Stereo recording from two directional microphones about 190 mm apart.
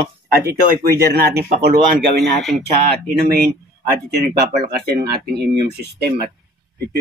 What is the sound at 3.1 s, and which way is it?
Speech, 55° right (ahead or behind).